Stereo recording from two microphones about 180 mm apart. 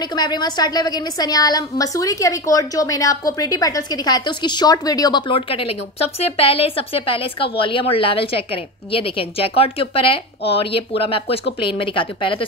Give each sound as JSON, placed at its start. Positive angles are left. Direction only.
{"t": 0.1, "sound": "a woman's voice", "side_deg": 25}